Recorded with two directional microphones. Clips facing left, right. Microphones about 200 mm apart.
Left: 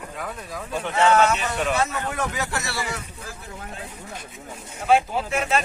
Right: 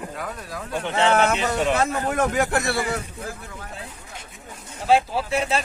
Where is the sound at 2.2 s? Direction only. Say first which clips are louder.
Right 9 dB; 50° right (ahead or behind).